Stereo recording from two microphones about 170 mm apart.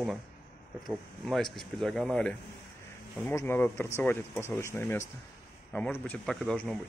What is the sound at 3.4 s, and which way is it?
Speech, 15° left (ahead or behind).